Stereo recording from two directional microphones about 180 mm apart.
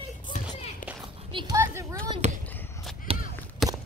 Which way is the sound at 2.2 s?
35° right (ahead or behind).